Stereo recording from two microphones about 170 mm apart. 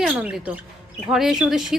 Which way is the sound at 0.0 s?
5° right (ahead or behind).